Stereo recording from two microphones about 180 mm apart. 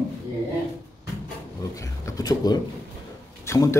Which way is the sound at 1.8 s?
20° left (ahead or behind).